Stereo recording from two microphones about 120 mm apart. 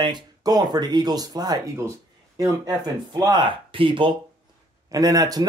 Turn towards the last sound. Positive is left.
turn(degrees=-30)  # may be behind; listen again after turning